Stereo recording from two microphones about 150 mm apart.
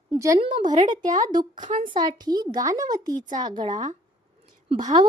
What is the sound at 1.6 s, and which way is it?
Speech, 60° right (ahead or behind).